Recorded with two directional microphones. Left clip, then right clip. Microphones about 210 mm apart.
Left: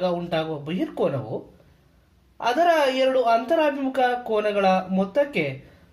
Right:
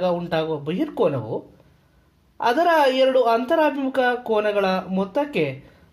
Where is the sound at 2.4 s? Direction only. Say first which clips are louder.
Right 2 dB; 35° right (ahead or behind).